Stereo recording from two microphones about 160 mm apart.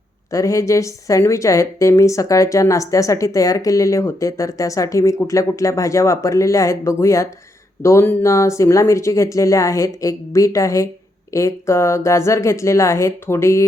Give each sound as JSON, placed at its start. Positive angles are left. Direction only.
{"t": 0.3, "sound": "a woman's voice", "side_deg": 20}